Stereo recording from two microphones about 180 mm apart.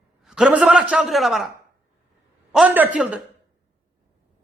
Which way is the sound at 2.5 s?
5° right (ahead or behind).